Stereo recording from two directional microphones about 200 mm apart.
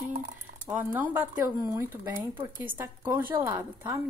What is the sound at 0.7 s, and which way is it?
Speech, 10° right (ahead or behind).